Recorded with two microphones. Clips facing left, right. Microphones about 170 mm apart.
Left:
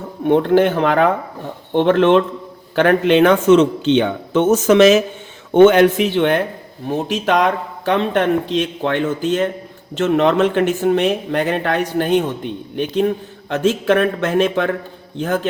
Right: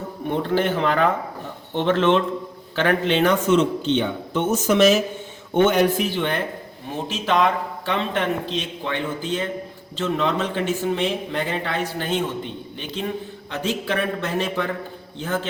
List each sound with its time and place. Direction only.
0.3 s a man's voice: 65° left (ahead or behind); by 6.1 s 85° left
6.1 s speech: 75° left (ahead or behind)
7.4 s speech: 65° left (ahead or behind)